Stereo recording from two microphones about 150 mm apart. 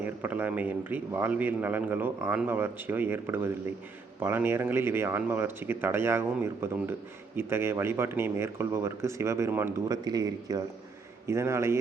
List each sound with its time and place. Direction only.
0.0 s a man's voice: 15° right (ahead or behind)
10.0 s a man's voice: 25° right (ahead or behind)